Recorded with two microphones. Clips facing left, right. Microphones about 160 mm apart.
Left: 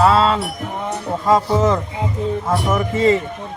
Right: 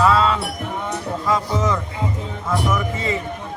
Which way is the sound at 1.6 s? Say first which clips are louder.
Left 4 dB; 45° left (ahead or behind).